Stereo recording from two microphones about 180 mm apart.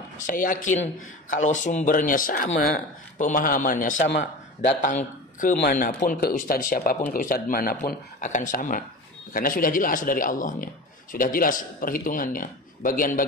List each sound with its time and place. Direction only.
0.3 s a man's voice: 50° left (ahead or behind)
4.1 s a man's voice: 75° left (ahead or behind)
4.8 s speech: 45° left (ahead or behind)
5.6 s a man's voice: 55° left (ahead or behind)